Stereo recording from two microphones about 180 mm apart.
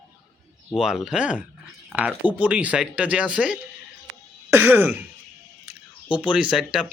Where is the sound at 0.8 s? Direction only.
5° right (ahead or behind).